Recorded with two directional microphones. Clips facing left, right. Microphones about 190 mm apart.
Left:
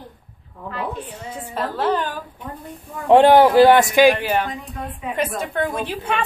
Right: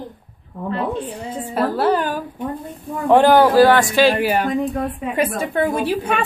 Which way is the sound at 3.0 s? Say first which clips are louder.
Left 1 dB; 25° left (ahead or behind).